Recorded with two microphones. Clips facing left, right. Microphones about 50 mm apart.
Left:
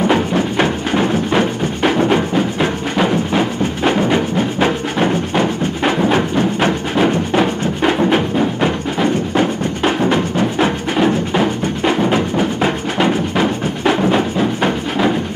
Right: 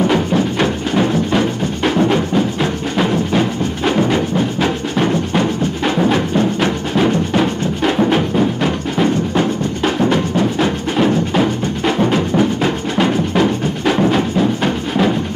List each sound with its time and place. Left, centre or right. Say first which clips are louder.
0.1 s music: even; centre
7.0 s music: even; centre
11.0 s music: right 1 dB; centre